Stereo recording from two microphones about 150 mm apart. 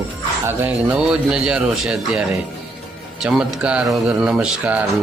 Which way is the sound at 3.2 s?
5° right (ahead or behind).